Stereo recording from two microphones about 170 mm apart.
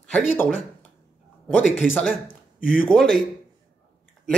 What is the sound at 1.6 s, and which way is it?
Speech, centre (ahead or behind).